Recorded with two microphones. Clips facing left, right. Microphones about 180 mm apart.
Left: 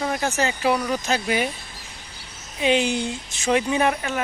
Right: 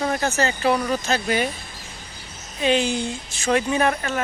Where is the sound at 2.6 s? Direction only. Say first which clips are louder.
Even; 15° left (ahead or behind).